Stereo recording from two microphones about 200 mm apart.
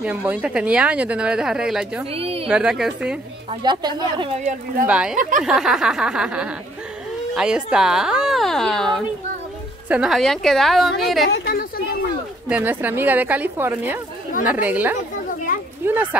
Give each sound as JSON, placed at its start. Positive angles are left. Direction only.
{"t": 0.0, "sound": "speech", "side_deg": -5}
{"t": 2.0, "sound": "a woman's voice", "side_deg": -30}
{"t": 2.4, "sound": "speech", "side_deg": -5}
{"t": 3.4, "sound": "a woman's voice", "side_deg": -25}
{"t": 4.8, "sound": "speech", "side_deg": -5}
{"t": 5.1, "sound": "speech", "side_deg": -40}
{"t": 5.4, "sound": "speech", "side_deg": -5}
{"t": 11.2, "sound": "a woman's voice", "side_deg": 50}
{"t": 12.4, "sound": "a woman's voice", "side_deg": -10}